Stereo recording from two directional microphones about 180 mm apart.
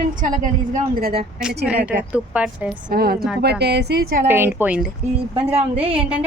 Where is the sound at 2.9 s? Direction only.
60° right (ahead or behind).